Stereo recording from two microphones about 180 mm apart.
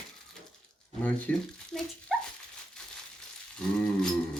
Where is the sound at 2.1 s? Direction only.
Centre (ahead or behind).